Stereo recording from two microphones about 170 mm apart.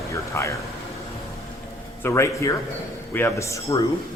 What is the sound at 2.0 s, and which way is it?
Speech, 15° left (ahead or behind).